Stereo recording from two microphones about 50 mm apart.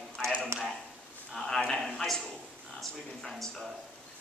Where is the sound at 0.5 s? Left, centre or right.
Right.